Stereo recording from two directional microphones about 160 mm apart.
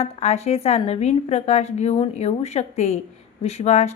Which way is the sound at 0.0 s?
40° left (ahead or behind).